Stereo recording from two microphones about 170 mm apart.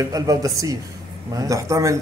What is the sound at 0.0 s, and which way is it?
Speech, 20° right (ahead or behind).